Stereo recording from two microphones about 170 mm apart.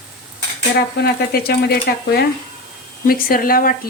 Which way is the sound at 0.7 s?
70° left (ahead or behind).